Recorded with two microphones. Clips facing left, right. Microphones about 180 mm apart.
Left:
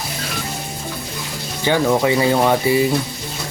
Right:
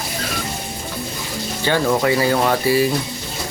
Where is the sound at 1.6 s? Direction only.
15° left (ahead or behind).